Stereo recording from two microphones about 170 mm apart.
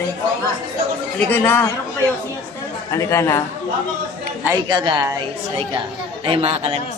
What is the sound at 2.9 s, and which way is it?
Speech, 15° left (ahead or behind).